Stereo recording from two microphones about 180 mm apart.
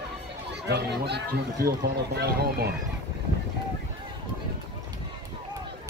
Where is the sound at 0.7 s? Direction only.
70° right (ahead or behind).